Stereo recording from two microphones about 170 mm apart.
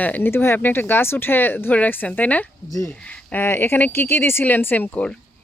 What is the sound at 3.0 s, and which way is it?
Speech, 10° left (ahead or behind).